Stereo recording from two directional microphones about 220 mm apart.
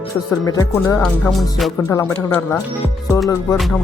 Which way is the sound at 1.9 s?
15° left (ahead or behind).